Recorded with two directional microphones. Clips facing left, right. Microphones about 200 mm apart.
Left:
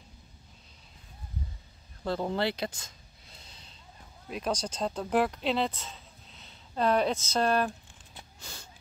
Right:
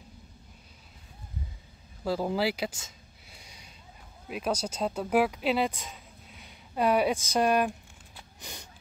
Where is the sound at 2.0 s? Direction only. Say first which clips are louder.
Right 2 dB; 5° right (ahead or behind).